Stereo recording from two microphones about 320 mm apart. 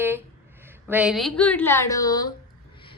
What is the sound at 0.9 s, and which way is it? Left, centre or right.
A woman's voice, centre.